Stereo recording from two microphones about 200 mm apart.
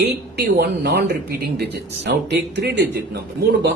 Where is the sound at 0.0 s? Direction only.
55° right (ahead or behind).